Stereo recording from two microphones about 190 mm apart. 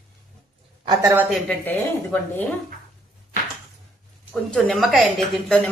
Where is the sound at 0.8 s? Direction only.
20° right (ahead or behind).